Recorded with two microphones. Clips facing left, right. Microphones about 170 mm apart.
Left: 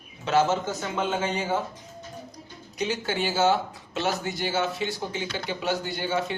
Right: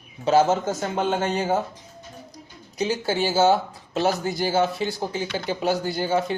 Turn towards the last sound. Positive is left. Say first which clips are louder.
# right 5 dB
turn(degrees=-40)  # may be behind; listen again after turning